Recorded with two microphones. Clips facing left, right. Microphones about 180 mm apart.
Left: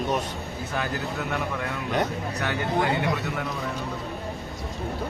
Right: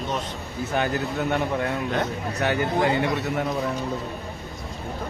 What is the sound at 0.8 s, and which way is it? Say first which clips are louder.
Speech: right 5 dB; 30° right (ahead or behind).